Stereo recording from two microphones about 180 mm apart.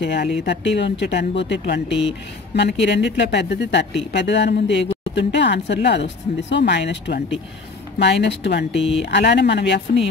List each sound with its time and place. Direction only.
0.0 s a woman's voice: 70° left (ahead or behind)
8.7 s speech: centre (ahead or behind)
9.0 s a woman's voice: 70° left (ahead or behind)